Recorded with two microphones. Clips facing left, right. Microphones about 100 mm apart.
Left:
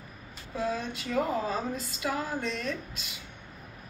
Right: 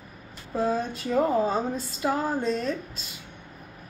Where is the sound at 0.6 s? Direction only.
40° right (ahead or behind).